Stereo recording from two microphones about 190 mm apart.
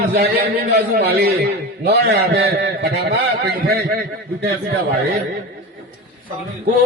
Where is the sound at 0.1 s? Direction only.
60° right (ahead or behind).